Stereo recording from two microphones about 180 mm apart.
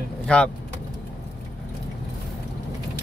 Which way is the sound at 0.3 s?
5° left (ahead or behind).